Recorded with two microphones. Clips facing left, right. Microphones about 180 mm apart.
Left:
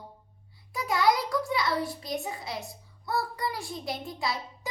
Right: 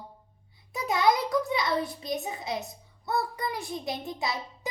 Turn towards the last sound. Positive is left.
turn(degrees=-20)  # may be behind; listen again after turning